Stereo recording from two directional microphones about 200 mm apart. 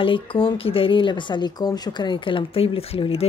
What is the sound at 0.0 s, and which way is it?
Speech, 25° left (ahead or behind).